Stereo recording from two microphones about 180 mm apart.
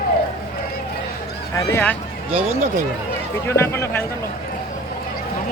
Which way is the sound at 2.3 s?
40° right (ahead or behind).